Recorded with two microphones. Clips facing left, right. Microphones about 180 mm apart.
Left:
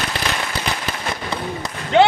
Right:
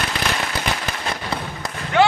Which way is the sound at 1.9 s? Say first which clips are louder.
Left 3 dB; 20° left (ahead or behind).